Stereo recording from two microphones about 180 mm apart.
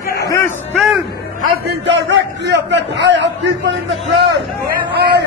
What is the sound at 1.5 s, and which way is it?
A man's voice, 65° right (ahead or behind).